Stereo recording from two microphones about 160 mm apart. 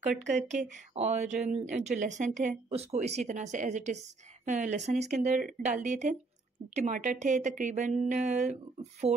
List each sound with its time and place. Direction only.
0.2 s speech: 50° right (ahead or behind)